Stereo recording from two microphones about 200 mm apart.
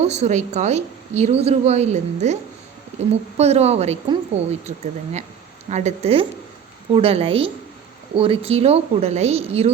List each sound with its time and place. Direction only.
0.0 s a woman's voice: 35° right (ahead or behind)
5.7 s a woman's voice: 35° right (ahead or behind)